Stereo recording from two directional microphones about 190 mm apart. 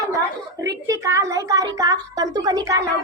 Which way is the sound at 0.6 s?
15° right (ahead or behind).